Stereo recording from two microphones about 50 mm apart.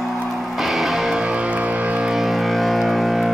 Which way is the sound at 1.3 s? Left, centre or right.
Right.